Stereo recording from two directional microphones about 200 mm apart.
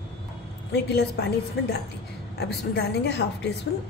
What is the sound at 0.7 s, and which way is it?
Speech, 55° left (ahead or behind).